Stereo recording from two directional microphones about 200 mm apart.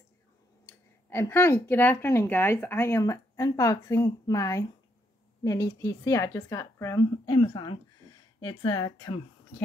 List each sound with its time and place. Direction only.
0.7 s speech: 10° left (ahead or behind)